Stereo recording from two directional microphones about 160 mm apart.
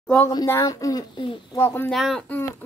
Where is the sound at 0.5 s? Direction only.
20° left (ahead or behind).